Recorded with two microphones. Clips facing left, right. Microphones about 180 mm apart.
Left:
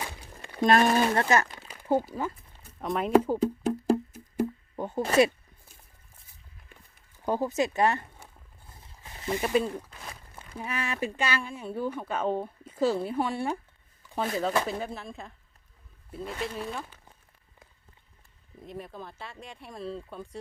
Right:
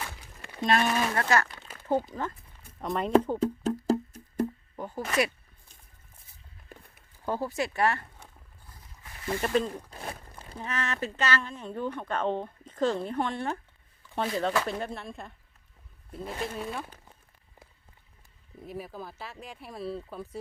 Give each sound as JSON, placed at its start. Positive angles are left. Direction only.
{"t": 0.6, "sound": "speech", "side_deg": 45}
{"t": 1.3, "sound": "speech", "side_deg": 20}
{"t": 1.8, "sound": "a sound", "side_deg": 10}
{"t": 4.8, "sound": "speech", "side_deg": 25}
{"t": 6.7, "sound": "a sound", "side_deg": -40}
{"t": 7.3, "sound": "speech", "side_deg": 20}
{"t": 8.7, "sound": "a sound", "side_deg": 25}
{"t": 9.5, "sound": "speech", "side_deg": 10}
{"t": 9.9, "sound": "a sound", "side_deg": -35}
{"t": 10.6, "sound": "speech", "side_deg": 10}
{"t": 14.7, "sound": "speech", "side_deg": 0}
{"t": 16.4, "sound": "speech", "side_deg": 0}
{"t": 18.6, "sound": "speech", "side_deg": -5}